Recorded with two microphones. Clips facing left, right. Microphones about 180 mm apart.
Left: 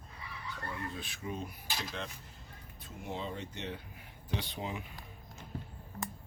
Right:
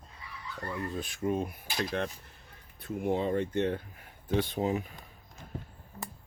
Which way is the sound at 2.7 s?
55° right (ahead or behind).